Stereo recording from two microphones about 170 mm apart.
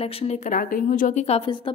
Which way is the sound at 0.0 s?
40° left (ahead or behind).